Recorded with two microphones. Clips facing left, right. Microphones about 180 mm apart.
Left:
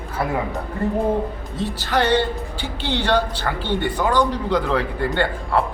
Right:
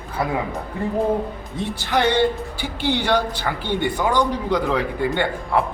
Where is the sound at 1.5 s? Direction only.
15° right (ahead or behind).